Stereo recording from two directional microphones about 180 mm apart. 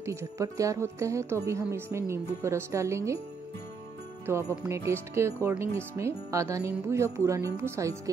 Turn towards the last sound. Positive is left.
turn(degrees=-15)  # may be behind; listen again after turning